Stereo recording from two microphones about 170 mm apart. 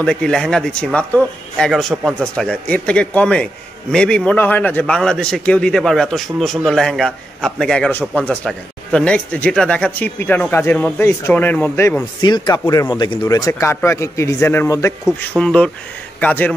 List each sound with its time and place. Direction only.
0.0 s a man's voice: 5° left (ahead or behind)
12.2 s speech: 25° left (ahead or behind)
15.0 s a man's voice: 5° left (ahead or behind)